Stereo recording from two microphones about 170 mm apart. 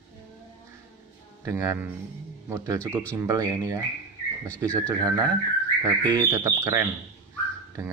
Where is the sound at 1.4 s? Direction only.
15° right (ahead or behind).